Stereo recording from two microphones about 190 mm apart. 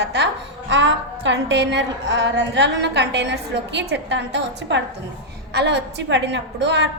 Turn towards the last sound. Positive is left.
turn(degrees=-65)  # may be behind; listen again after turning